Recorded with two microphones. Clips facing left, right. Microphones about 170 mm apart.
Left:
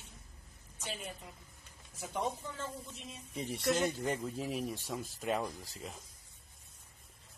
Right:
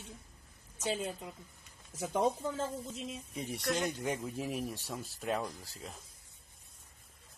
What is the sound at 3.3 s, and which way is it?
Speech, 5° right (ahead or behind).